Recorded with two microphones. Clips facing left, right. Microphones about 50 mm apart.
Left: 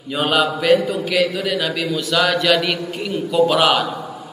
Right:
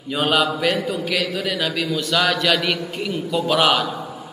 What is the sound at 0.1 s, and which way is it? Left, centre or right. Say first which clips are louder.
A man's voice: left 1 dB; centre.